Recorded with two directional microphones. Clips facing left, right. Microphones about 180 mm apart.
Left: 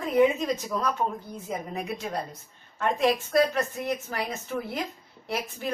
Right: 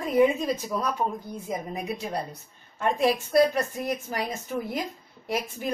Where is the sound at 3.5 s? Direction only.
15° right (ahead or behind).